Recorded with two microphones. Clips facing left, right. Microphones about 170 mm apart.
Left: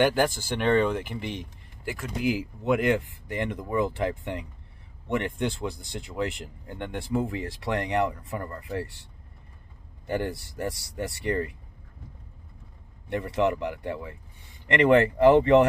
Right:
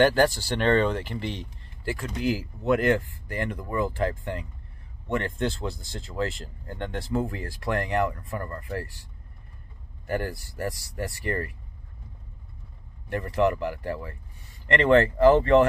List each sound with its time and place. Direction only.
0.0 s speech: 10° left (ahead or behind)
10.0 s speech: 20° left (ahead or behind)
13.1 s speech: 20° left (ahead or behind)